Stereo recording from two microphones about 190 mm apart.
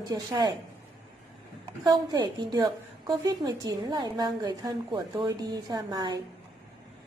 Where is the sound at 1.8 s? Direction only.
20° right (ahead or behind).